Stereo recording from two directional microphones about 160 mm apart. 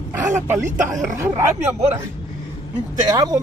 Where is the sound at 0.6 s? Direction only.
50° right (ahead or behind).